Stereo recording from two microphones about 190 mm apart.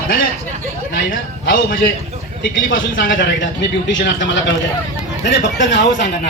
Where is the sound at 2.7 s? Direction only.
80° left.